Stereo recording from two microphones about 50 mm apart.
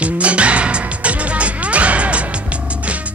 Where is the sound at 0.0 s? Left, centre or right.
Right.